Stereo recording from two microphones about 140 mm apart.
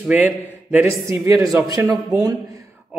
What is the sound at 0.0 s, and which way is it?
A man's voice, 10° right (ahead or behind).